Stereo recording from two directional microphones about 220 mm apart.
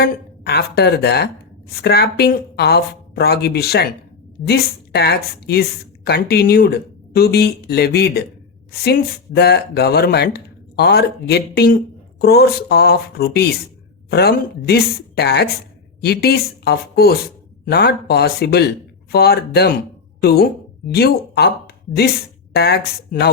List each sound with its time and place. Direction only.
0.0 s speech: 50° left (ahead or behind)
22.5 s speech: 45° left (ahead or behind)